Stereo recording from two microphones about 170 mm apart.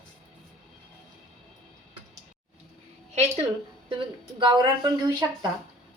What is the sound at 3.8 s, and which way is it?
Speech, 30° right (ahead or behind).